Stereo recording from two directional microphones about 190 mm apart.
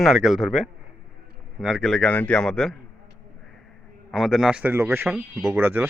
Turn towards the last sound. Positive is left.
turn(degrees=-10)  # may be behind; listen again after turning